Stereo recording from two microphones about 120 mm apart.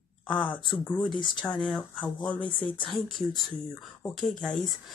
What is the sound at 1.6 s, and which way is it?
Speech, centre (ahead or behind).